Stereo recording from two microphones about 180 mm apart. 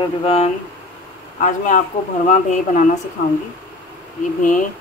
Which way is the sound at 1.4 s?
45° left (ahead or behind).